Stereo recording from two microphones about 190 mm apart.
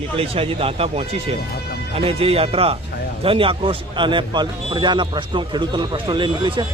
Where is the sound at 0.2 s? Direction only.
30° right (ahead or behind).